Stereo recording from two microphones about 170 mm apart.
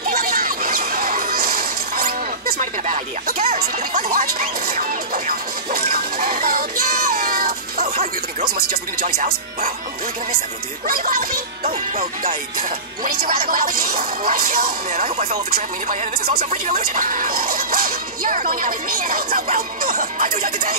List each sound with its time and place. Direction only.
0.0 s music: 60° right (ahead or behind)
7.8 s speech: 45° right (ahead or behind)
10.9 s speech: 55° right (ahead or behind)
11.6 s speech: 45° right (ahead or behind)